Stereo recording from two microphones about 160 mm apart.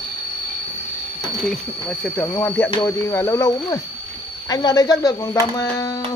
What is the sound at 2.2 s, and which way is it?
Speech, 15° left (ahead or behind).